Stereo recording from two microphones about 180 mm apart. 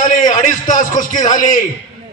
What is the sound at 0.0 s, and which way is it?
A man's voice, 45° left (ahead or behind).